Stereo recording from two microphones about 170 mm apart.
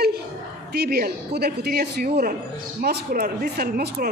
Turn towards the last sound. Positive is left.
turn(degrees=-60)  # may be behind; listen again after turning